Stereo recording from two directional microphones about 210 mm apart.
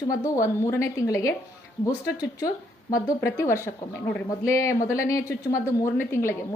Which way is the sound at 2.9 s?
15° left (ahead or behind).